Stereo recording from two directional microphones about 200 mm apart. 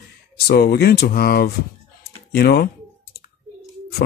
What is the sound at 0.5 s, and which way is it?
Speech, 55° left (ahead or behind).